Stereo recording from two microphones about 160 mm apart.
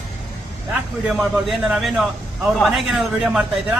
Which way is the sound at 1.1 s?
Centre (ahead or behind).